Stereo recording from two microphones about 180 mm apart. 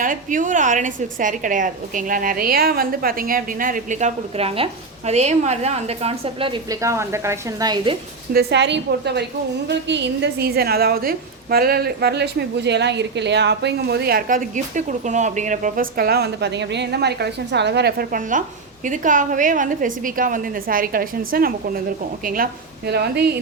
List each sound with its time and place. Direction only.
0.0 s a woman's voice: 45° right (ahead or behind); by 7.9 s 20° right (ahead or behind)
8.3 s a woman's voice: 65° right (ahead or behind)
22.9 s speech: 65° right (ahead or behind)